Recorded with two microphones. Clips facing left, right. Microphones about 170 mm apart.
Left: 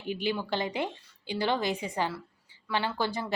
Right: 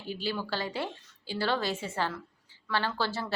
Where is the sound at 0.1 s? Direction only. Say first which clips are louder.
Left 3 dB; 15° left (ahead or behind).